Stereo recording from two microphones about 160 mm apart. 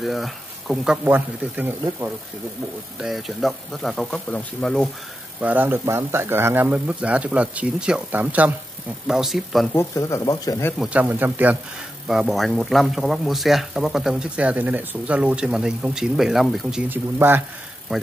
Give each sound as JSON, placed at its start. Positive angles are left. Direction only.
{"t": 0.0, "sound": "speech", "side_deg": 0}
{"t": 1.0, "sound": "speech", "side_deg": -10}
{"t": 5.4, "sound": "speech", "side_deg": -10}
{"t": 9.8, "sound": "speech", "side_deg": 20}
{"t": 10.8, "sound": "speech", "side_deg": -10}
{"t": 16.9, "sound": "speech", "side_deg": -10}